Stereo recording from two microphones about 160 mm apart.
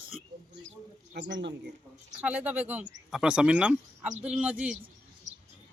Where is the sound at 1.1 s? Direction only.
90° right.